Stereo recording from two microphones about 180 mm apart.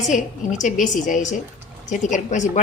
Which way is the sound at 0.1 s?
45° left (ahead or behind).